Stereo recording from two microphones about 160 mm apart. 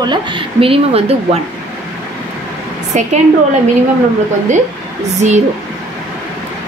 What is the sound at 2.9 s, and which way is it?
Speech, 50° right (ahead or behind).